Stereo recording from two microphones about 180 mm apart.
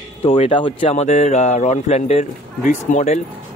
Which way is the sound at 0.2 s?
30° left (ahead or behind).